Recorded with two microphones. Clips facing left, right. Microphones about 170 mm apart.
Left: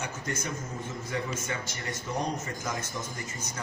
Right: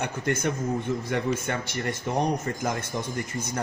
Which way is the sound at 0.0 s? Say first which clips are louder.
Right 8 dB; 60° right (ahead or behind).